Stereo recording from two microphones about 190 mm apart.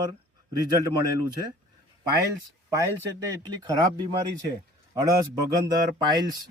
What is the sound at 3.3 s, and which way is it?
Speech, 20° right (ahead or behind).